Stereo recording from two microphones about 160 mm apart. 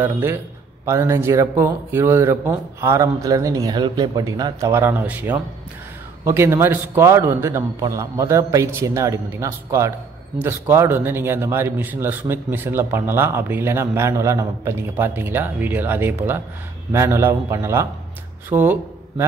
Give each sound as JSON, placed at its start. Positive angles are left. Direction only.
{"t": 0.0, "sound": "a man's voice", "side_deg": -15}